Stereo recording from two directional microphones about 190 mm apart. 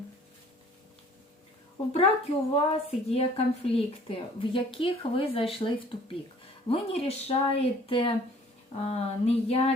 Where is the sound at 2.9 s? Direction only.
30° left (ahead or behind).